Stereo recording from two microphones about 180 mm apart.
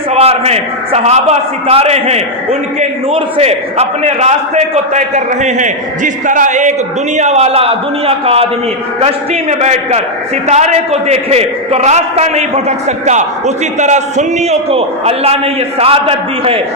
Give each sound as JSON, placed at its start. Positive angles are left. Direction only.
{"t": 0.1, "sound": "a man's voice", "side_deg": -35}